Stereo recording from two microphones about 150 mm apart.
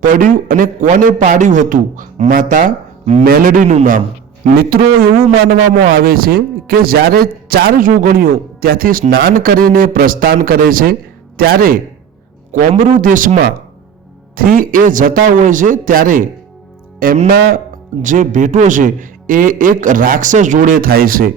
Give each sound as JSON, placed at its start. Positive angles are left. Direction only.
{"t": 0.0, "sound": "a man's voice", "side_deg": -65}
{"t": 3.2, "sound": "a man's voice", "side_deg": -75}
{"t": 4.4, "sound": "a man's voice", "side_deg": -75}
{"t": 12.5, "sound": "a man's voice", "side_deg": -65}
{"t": 18.0, "sound": "a man's voice", "side_deg": -55}